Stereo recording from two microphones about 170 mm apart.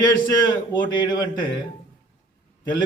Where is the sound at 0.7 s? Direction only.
25° left (ahead or behind).